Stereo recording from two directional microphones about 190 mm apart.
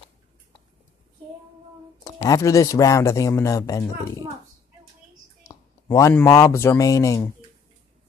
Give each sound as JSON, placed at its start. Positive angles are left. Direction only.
{"t": 2.0, "sound": "speech", "side_deg": 15}
{"t": 5.4, "sound": "speech", "side_deg": 15}